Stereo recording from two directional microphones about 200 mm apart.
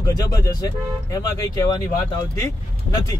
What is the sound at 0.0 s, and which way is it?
Speech, 15° left (ahead or behind).